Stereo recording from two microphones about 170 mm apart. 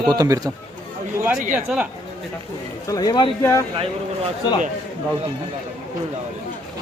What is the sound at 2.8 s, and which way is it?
Speech, 20° left (ahead or behind).